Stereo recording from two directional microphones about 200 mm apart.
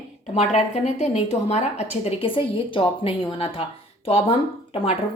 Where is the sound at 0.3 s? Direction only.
35° left (ahead or behind).